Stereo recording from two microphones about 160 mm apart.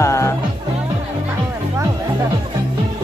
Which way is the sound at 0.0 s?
20° left (ahead or behind).